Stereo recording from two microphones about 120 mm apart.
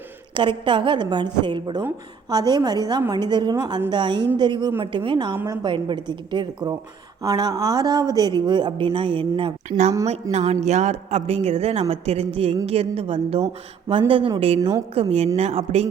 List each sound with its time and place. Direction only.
0.3 s a woman's voice: 45° right (ahead or behind)
7.2 s a woman's voice: 30° right (ahead or behind); by 9.5 s 45° right (ahead or behind)
9.6 s a woman's voice: 75° right (ahead or behind); by 15.1 s 50° right (ahead or behind)
15.4 s speech: 65° right (ahead or behind)